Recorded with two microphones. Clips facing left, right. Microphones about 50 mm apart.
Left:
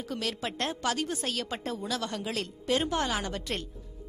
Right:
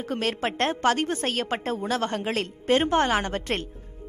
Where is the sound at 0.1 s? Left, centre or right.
Right.